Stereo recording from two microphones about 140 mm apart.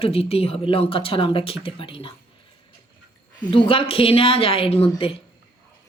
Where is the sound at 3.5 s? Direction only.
40° left (ahead or behind).